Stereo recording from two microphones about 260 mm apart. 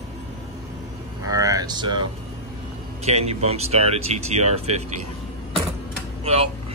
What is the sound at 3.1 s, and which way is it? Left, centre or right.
Speech, right.